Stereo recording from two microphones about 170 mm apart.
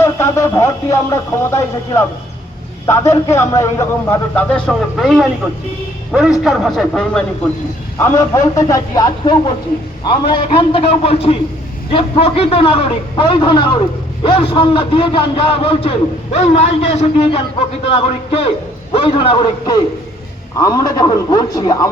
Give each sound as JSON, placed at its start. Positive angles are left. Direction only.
{"t": 0.0, "sound": "a man's voice", "side_deg": 15}
{"t": 7.9, "sound": "a man's voice", "side_deg": 15}